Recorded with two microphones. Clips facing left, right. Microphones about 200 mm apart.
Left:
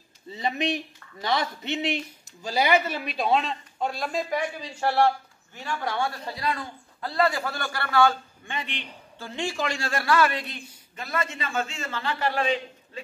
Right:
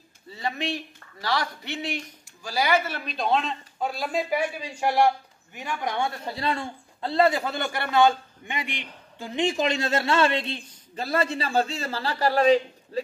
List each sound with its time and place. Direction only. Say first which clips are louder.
0.3 s speech: left 3 dB; 20° left (ahead or behind)
3.1 s a man's voice: even; 5° left (ahead or behind); by 13.0 s 35° right (ahead or behind)